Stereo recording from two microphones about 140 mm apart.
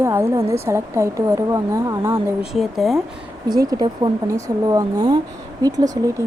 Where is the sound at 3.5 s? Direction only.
25° right (ahead or behind).